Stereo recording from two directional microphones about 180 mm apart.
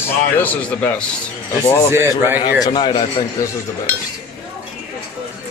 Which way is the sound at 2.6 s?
25° left (ahead or behind).